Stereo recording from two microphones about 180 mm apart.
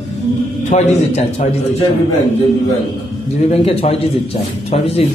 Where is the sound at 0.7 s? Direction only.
40° left (ahead or behind).